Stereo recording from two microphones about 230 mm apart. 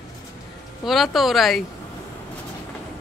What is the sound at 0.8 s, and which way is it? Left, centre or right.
Speech, centre.